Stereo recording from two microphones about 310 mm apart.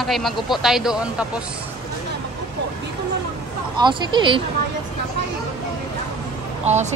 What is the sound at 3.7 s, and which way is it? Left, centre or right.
Speech, centre.